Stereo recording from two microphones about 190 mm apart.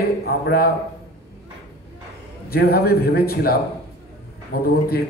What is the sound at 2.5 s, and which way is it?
A man's voice, 55° left (ahead or behind).